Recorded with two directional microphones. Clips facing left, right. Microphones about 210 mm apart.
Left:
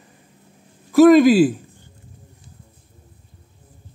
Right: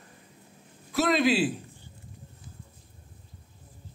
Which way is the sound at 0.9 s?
45° left (ahead or behind).